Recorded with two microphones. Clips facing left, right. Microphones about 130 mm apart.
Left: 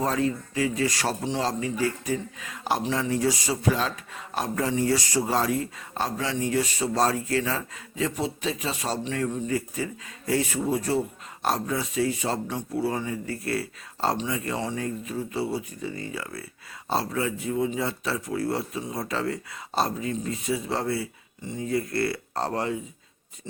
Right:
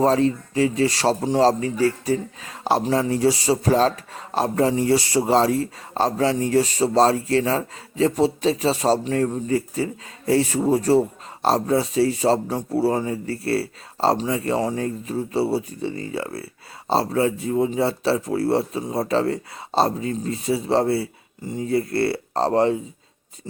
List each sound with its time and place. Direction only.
0.0 s speech: 30° right (ahead or behind)